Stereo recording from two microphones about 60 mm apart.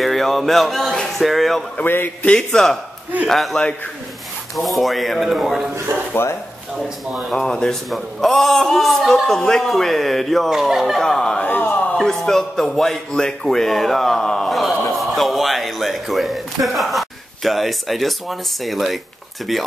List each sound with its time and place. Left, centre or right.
0.0 s speech: centre
2.2 s a man's voice: centre
3.3 s speech: centre
5.9 s speech: right
7.2 s speech: centre
11.0 s speech: centre
11.4 s a sound: left
12.0 s speech: centre